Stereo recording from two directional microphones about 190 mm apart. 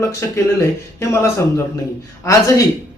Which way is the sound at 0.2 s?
15° left (ahead or behind).